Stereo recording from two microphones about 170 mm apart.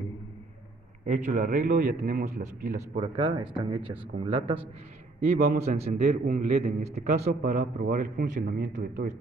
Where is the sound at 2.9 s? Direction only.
35° right (ahead or behind).